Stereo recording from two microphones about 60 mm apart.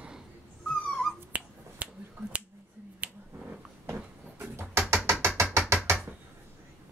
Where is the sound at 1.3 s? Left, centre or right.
Right.